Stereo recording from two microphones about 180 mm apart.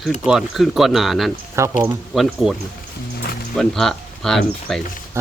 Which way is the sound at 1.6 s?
15° right (ahead or behind).